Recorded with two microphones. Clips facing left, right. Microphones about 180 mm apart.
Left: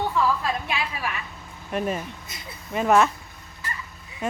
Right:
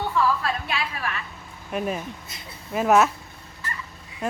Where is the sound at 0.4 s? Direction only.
15° left (ahead or behind).